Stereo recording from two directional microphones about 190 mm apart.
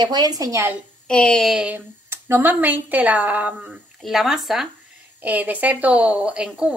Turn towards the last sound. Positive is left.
turn(degrees=-5)  # may be behind; listen again after turning